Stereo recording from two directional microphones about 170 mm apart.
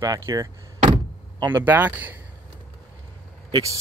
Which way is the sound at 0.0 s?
20° right (ahead or behind).